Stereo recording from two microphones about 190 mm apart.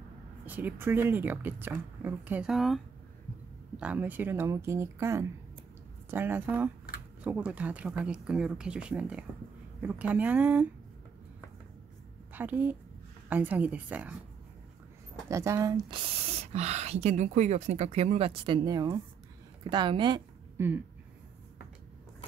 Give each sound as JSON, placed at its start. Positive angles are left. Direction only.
{"t": 0.5, "sound": "speech", "side_deg": -10}
{"t": 12.4, "sound": "speech", "side_deg": -10}
{"t": 15.2, "sound": "a woman's voice", "side_deg": -15}
{"t": 20.5, "sound": "speech", "side_deg": -10}